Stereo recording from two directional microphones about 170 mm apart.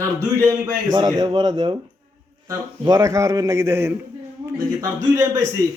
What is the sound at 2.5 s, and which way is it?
A man's voice, 20° right (ahead or behind).